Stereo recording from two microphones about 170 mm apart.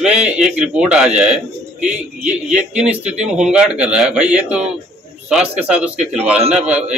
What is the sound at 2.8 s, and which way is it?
A man's voice, 5° right (ahead or behind).